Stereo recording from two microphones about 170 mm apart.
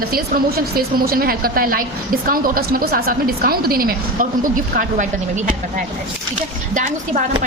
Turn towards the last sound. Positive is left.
turn(degrees=-45)  # may be behind; listen again after turning